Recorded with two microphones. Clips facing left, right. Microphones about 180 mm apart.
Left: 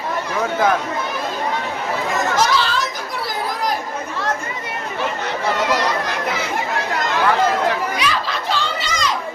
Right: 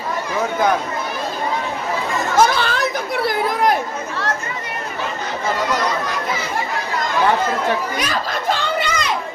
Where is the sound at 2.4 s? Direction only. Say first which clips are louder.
Right 6 dB; 55° right (ahead or behind).